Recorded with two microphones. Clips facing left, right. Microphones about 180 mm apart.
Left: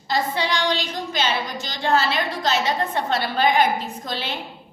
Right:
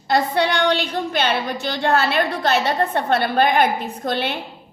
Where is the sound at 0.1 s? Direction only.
60° right (ahead or behind).